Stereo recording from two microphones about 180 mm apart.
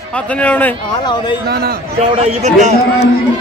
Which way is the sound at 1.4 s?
60° right (ahead or behind).